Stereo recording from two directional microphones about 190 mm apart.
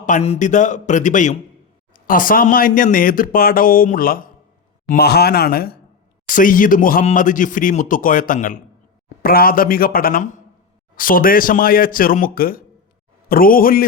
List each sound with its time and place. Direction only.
0.0 s a man's voice: 40° left (ahead or behind)